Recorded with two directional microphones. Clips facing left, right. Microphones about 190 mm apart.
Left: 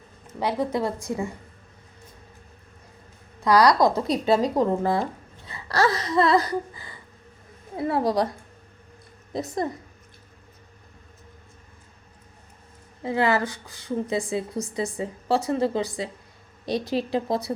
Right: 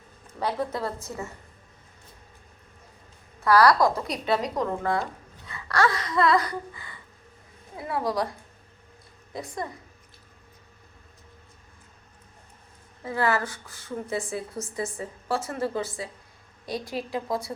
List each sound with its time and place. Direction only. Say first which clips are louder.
0.3 s a woman's voice: left 4 dB; 10° left (ahead or behind)
3.4 s speech: left 1 dB; 15° left (ahead or behind)
9.6 s a woman's voice: left 8 dB; 35° left (ahead or behind)
13.0 s a woman's voice: left 3 dB; 20° left (ahead or behind)
16.9 s speech: left 4 dB; 30° left (ahead or behind)